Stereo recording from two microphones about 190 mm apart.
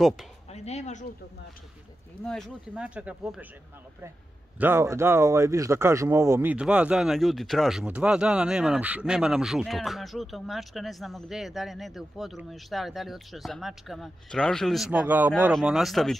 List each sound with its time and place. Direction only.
0.0 s speech: centre (ahead or behind)
0.5 s a sound: 35° left (ahead or behind)
2.2 s speech: 5° left (ahead or behind)
4.6 s speech: 10° right (ahead or behind)